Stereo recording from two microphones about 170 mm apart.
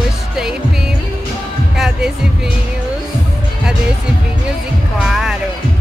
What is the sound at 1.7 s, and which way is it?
Music, 5° right (ahead or behind).